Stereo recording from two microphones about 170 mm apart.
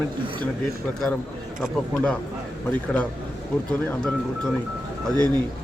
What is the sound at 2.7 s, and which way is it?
A man's voice, 10° left (ahead or behind).